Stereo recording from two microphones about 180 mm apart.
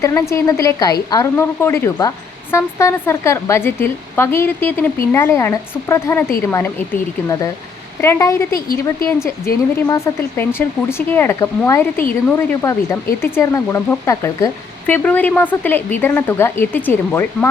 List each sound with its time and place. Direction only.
0.0 s speech: 15° left (ahead or behind)
8.5 s a woman's voice: 55° left (ahead or behind)
9.0 s speech: 15° left (ahead or behind)